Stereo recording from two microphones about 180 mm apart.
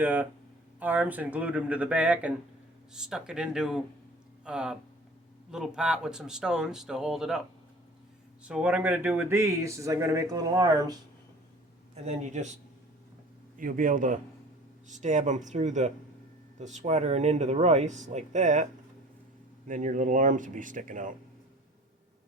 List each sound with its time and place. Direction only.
0.0 s speech: 10° right (ahead or behind)
8.4 s speech: 5° right (ahead or behind)
12.0 s speech: 40° right (ahead or behind)
13.6 s speech: 50° right (ahead or behind)